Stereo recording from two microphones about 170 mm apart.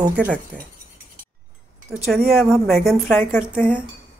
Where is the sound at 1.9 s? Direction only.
Centre (ahead or behind).